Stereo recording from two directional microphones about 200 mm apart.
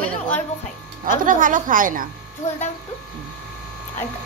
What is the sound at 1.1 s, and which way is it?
A woman's voice, 40° right (ahead or behind).